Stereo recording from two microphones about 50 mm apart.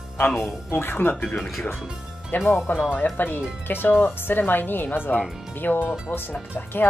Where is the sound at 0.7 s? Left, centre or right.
Left.